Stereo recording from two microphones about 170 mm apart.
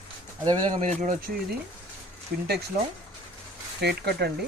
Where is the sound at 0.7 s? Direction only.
45° right (ahead or behind).